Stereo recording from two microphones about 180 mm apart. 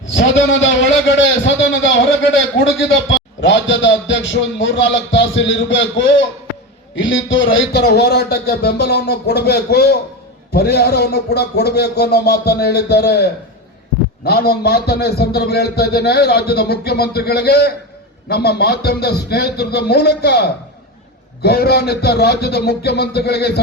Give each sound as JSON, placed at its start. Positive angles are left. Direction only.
{"t": 0.0, "sound": "a man's voice", "side_deg": 90}
{"t": 7.5, "sound": "a man's voice", "side_deg": 80}